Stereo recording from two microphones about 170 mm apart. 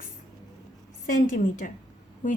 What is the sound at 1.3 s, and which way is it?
Speech, 50° left (ahead or behind).